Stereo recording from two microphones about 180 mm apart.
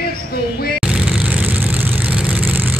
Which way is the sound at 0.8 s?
5° right (ahead or behind).